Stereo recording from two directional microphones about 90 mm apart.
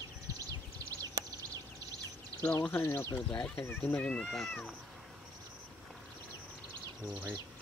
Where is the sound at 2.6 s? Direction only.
25° left (ahead or behind).